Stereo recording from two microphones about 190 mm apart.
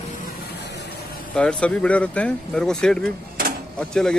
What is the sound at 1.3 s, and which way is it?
Speech, 5° left (ahead or behind).